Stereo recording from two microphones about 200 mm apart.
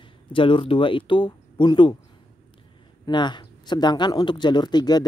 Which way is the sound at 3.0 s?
20° left (ahead or behind).